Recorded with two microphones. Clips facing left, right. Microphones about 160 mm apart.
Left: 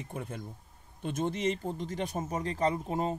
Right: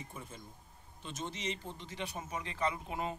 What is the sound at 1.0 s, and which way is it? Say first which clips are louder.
Speech: left 10 dB; 55° left (ahead or behind).